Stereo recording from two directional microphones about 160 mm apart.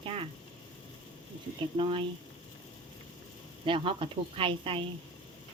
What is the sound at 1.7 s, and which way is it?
Speech, 35° right (ahead or behind).